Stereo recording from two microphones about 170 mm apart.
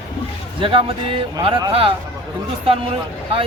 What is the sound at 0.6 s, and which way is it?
Speech, 30° right (ahead or behind).